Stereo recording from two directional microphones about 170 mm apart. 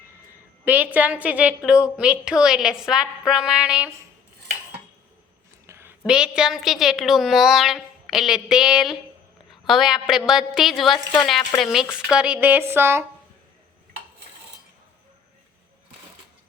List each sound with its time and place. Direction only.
0.6 s a woman's voice: 10° right (ahead or behind)
5.6 s a sound: 15° right (ahead or behind)
6.1 s a woman's voice: 5° right (ahead or behind)